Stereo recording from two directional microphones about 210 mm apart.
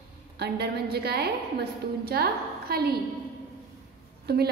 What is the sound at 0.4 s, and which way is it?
A woman's voice, 50° right (ahead or behind).